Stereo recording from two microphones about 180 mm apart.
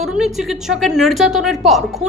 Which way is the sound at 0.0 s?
Centre (ahead or behind).